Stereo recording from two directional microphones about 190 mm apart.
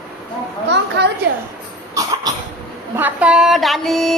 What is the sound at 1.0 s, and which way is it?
Speech, 65° right (ahead or behind).